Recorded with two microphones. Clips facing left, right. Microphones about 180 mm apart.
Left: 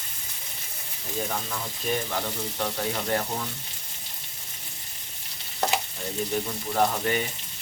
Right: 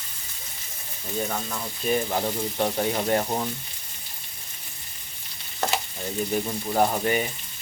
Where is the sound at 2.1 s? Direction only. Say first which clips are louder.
Right 4 dB; 30° right (ahead or behind).